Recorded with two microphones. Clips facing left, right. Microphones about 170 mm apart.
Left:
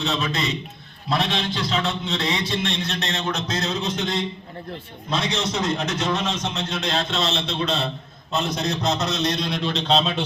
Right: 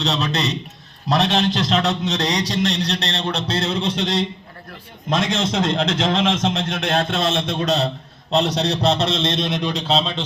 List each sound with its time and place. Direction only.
0.0 s a man's voice: 75° right (ahead or behind)
1.0 s speech: 40° right (ahead or behind)
1.5 s speech: 90° right
1.9 s speech: 40° right (ahead or behind)
5.0 s a man's voice: 55° right (ahead or behind)
8.4 s a man's voice: 70° right (ahead or behind)
8.6 s a man's voice: 35° right (ahead or behind); by 9.8 s 15° right (ahead or behind)